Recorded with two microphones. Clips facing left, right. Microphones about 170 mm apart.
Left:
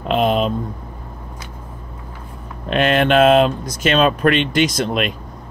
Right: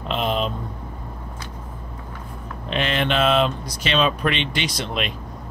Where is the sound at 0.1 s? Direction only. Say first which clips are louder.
Left 7 dB; 50° left (ahead or behind).